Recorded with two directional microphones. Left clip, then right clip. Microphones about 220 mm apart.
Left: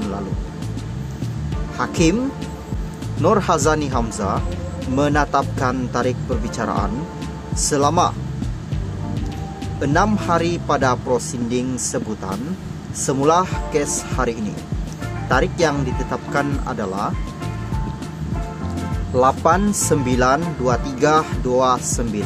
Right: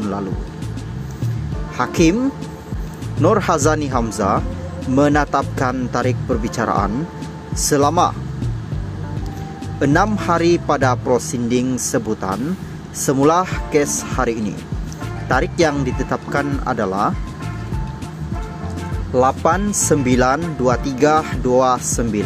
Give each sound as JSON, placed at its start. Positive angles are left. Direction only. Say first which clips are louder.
{"t": 1.8, "sound": "speech", "louder": "right 3 dB", "side_deg": -20}
{"t": 3.2, "sound": "speech", "louder": "right 1 dB", "side_deg": -20}
{"t": 9.8, "sound": "speech", "louder": "right 2 dB", "side_deg": -20}
{"t": 19.1, "sound": "speech", "louder": "even", "side_deg": -15}